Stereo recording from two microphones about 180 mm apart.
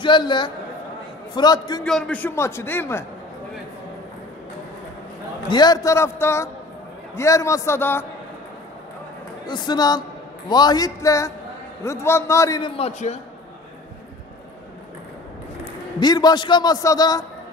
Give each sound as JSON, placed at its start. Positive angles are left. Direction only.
{"t": 0.0, "sound": "a man's voice", "side_deg": 25}
{"t": 1.9, "sound": "a man's voice", "side_deg": 5}
{"t": 5.5, "sound": "a man's voice", "side_deg": 20}
{"t": 9.5, "sound": "a man's voice", "side_deg": 20}
{"t": 16.0, "sound": "a man's voice", "side_deg": 20}